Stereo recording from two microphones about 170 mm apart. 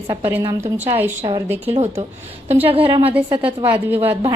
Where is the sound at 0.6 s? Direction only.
40° right (ahead or behind).